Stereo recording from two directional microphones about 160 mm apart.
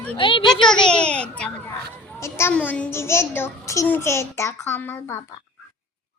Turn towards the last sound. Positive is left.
turn(degrees=15)  # may be behind; listen again after turning